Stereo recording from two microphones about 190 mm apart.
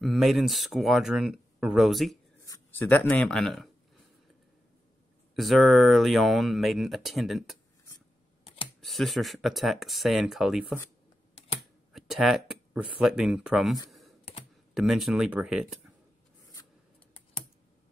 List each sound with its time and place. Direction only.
0.0 s speech: centre (ahead or behind)
2.4 s speech: 15° left (ahead or behind)
5.3 s speech: centre (ahead or behind)
8.8 s speech: centre (ahead or behind)
11.9 s speech: centre (ahead or behind)
13.8 s computer keyboard: centre (ahead or behind)
14.7 s speech: centre (ahead or behind)